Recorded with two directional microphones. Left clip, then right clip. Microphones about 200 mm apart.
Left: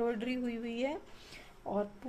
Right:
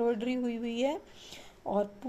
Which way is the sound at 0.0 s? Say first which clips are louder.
Right 4 dB; 15° right (ahead or behind).